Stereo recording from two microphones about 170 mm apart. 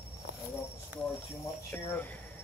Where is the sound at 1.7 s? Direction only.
10° left (ahead or behind).